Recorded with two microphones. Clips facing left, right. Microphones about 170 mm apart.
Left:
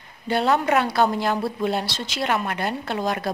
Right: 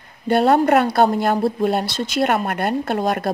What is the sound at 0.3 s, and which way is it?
A woman's voice, 50° right (ahead or behind).